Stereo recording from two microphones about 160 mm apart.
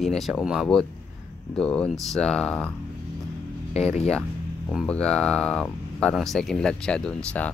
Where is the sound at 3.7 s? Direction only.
40° left (ahead or behind).